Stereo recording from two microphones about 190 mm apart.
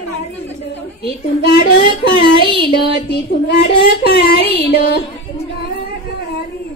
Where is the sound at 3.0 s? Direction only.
60° left (ahead or behind).